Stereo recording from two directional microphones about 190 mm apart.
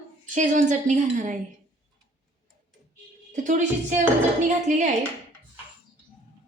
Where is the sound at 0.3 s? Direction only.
40° right (ahead or behind).